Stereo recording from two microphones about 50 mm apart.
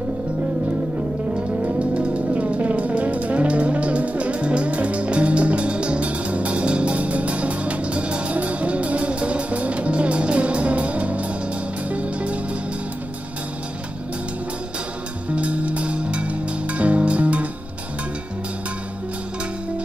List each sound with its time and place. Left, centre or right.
1.6 s music: right
15.3 s music: right